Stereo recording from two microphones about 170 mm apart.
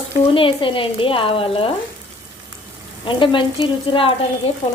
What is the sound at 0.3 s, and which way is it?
Speech, 30° left (ahead or behind).